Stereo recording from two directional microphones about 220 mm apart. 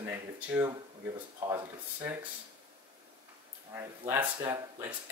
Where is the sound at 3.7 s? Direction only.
10° right (ahead or behind).